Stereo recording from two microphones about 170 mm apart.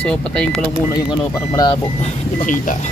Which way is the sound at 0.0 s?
5° left (ahead or behind).